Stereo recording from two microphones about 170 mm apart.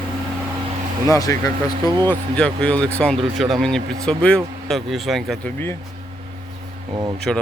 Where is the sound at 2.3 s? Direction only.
5° left (ahead or behind).